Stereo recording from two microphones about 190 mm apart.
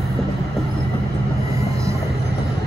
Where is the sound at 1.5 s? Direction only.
15° right (ahead or behind).